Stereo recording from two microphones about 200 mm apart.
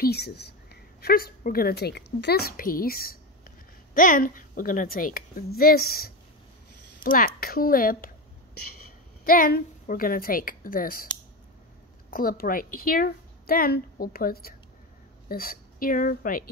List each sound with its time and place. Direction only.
0.0 s a woman's voice: 55° left (ahead or behind)
9.2 s a woman's voice: 45° left (ahead or behind)
12.1 s a woman's voice: 45° left (ahead or behind)